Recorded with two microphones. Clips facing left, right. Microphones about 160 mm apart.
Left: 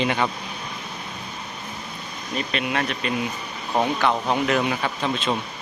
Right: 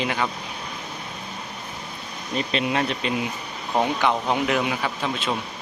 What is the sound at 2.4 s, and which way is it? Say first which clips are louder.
Speech: right 2 dB; 25° right (ahead or behind).